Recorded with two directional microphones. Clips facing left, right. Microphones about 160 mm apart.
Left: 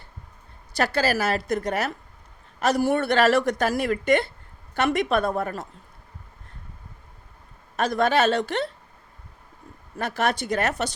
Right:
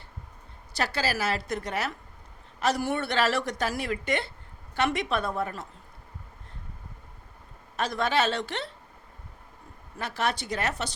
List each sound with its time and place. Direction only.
0.9 s a woman's voice: 50° left (ahead or behind)
7.8 s a woman's voice: 45° left (ahead or behind)
10.0 s a woman's voice: 50° left (ahead or behind)